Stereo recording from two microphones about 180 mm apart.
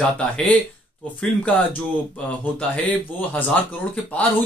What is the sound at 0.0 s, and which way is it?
Speech, 5° left (ahead or behind).